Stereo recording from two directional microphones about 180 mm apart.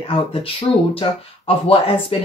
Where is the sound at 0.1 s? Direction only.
30° left (ahead or behind).